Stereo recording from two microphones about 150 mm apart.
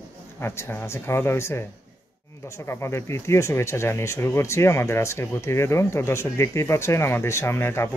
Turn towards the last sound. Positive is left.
turn(degrees=15)  # may be behind; listen again after turning